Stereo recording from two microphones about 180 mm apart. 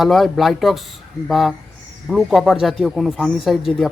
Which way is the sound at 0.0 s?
Centre (ahead or behind).